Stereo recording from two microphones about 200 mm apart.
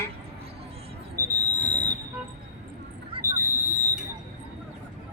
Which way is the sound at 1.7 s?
20° right (ahead or behind).